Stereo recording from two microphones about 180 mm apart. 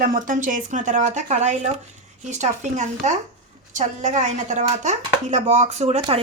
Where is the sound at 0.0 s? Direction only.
50° right (ahead or behind).